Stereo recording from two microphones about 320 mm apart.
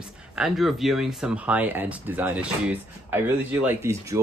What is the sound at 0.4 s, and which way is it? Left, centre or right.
Speech, centre.